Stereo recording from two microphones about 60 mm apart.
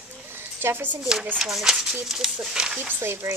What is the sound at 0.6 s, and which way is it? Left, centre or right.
Speech, right.